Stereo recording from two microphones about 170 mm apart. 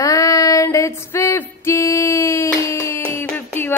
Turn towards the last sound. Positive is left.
turn(degrees=10)  # may be behind; listen again after turning